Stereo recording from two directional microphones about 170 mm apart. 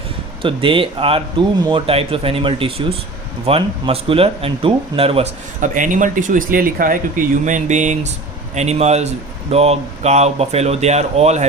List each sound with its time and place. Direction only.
0.4 s speech: 30° right (ahead or behind)
5.5 s speech: 50° right (ahead or behind)